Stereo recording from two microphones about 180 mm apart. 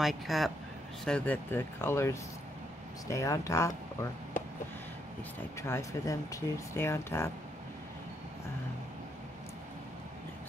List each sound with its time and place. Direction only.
0.0 s speech: centre (ahead or behind); by 4.1 s 15° left (ahead or behind)
5.6 s speech: 15° left (ahead or behind)